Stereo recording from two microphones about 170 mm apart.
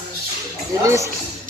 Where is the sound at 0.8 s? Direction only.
20° right (ahead or behind).